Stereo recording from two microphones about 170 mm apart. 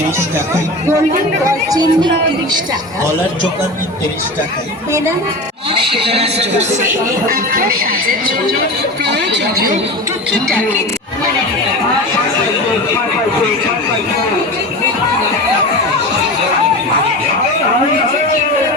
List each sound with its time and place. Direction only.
1.5 s speech: 20° right (ahead or behind)
5.7 s a man's voice: 30° right (ahead or behind)
7.3 s speech: 60° right (ahead or behind)
9.1 s speech: 90° right